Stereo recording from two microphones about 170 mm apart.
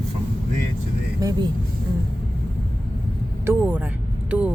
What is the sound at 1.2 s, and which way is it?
Speech, 20° right (ahead or behind).